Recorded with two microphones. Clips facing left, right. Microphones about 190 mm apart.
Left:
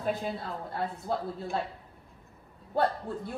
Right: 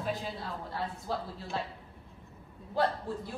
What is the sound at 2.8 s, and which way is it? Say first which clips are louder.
Speech: left 2 dB; 60° left (ahead or behind).